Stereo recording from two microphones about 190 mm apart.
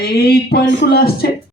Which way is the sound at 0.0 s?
55° left (ahead or behind).